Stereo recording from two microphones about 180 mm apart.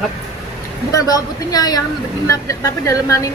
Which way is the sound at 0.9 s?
20° left (ahead or behind).